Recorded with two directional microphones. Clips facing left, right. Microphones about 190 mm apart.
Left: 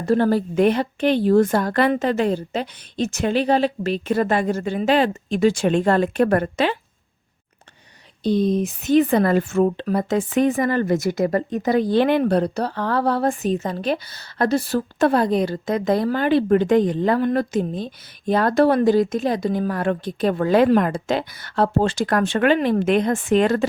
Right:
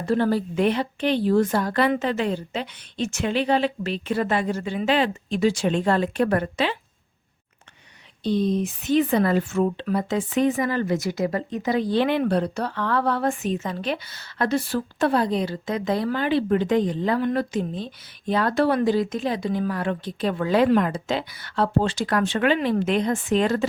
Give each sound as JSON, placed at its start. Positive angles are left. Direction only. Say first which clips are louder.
{"t": 0.0, "sound": "speech", "louder": "left 3 dB", "side_deg": 45}
{"t": 1.9, "sound": "speech", "louder": "left 4 dB", "side_deg": 40}
{"t": 8.2, "sound": "speech", "louder": "left 3 dB", "side_deg": 45}